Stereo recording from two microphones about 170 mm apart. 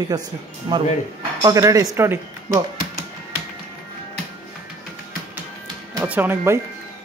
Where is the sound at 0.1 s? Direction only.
20° right (ahead or behind).